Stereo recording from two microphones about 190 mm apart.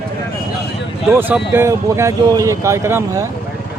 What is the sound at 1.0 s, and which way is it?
Speech, 10° right (ahead or behind).